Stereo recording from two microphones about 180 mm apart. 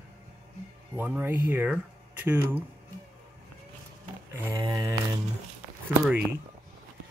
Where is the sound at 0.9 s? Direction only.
10° right (ahead or behind).